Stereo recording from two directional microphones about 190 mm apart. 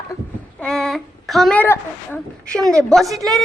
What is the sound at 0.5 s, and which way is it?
A woman's voice, 5° left (ahead or behind).